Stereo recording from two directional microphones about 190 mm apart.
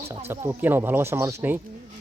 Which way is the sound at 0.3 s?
10° right (ahead or behind).